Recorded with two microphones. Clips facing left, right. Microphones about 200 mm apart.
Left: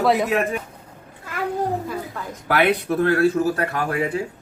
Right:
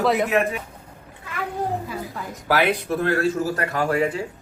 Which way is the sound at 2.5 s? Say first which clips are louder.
Left 2 dB; 60° left (ahead or behind).